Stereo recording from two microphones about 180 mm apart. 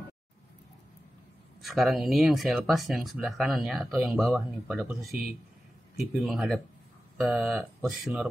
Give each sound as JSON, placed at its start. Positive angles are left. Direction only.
{"t": 1.6, "sound": "speech", "side_deg": 0}
{"t": 5.9, "sound": "speech", "side_deg": 0}